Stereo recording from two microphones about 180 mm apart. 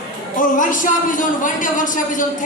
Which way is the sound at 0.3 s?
45° left (ahead or behind).